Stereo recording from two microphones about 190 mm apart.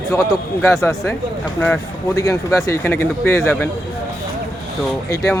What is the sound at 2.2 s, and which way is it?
Speech, 15° left (ahead or behind).